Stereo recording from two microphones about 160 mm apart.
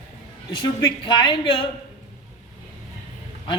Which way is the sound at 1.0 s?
30° left (ahead or behind).